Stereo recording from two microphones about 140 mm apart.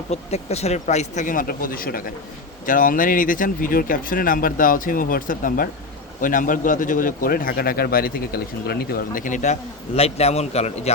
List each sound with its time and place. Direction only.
0.1 s speech: 50° left (ahead or behind); by 2.0 s 90° left
2.6 s a man's voice: 75° left (ahead or behind); by 10.9 s 50° left (ahead or behind)